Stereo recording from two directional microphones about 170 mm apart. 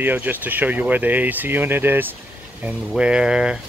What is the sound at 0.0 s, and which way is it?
Speech, 10° right (ahead or behind).